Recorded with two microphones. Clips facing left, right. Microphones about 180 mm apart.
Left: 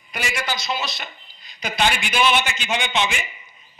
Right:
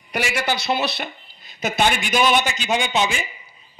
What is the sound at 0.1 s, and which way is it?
A man's voice, 65° right (ahead or behind).